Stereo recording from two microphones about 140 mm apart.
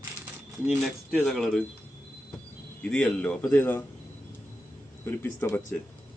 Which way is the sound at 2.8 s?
5° left (ahead or behind).